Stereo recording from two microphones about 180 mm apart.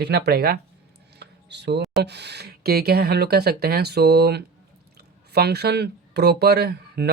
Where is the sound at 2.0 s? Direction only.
70° right (ahead or behind).